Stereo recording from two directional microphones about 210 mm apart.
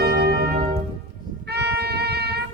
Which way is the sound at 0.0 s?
50° right (ahead or behind).